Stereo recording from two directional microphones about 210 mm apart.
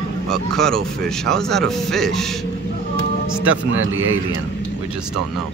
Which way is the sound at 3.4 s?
70° right (ahead or behind).